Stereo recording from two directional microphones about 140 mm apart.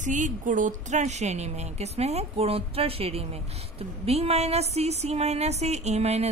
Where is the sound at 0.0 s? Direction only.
65° right (ahead or behind).